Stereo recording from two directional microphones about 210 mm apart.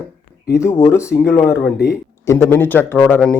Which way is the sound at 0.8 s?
15° left (ahead or behind).